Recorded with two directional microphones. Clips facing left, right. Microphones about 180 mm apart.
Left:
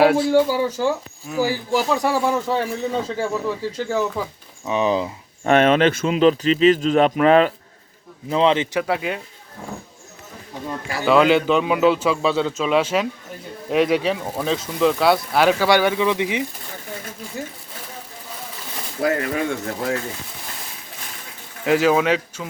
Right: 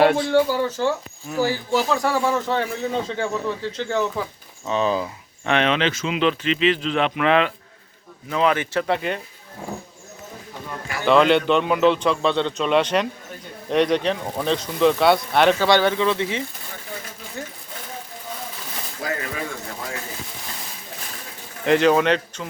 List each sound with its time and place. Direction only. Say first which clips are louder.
0.0 s speech: left 2 dB; 5° left (ahead or behind)
4.7 s speech: left 2 dB; 15° left (ahead or behind)
5.5 s speech: left 5 dB; 45° left (ahead or behind)
6.1 s speech: left 5 dB; 40° left (ahead or behind)
8.3 s speech: left 3 dB; 25° left (ahead or behind)
8.8 s speech: even; 5° left (ahead or behind)
11.0 s speech: left 1 dB; 5° left (ahead or behind)
19.0 s speech: left 8 dB; 60° left (ahead or behind)
21.6 s speech: even; 5° left (ahead or behind)